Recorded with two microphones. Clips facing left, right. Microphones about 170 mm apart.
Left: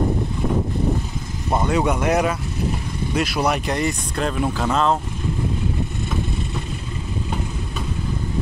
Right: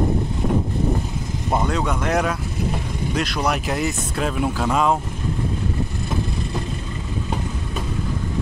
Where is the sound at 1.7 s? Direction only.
10° left (ahead or behind); by 4.9 s 10° right (ahead or behind).